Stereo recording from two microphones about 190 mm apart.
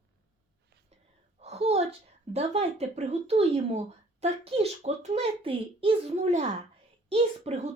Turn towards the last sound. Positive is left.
turn(degrees=-35)  # may be behind; listen again after turning